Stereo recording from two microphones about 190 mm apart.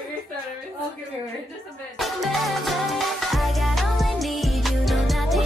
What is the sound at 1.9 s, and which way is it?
Music, centre (ahead or behind).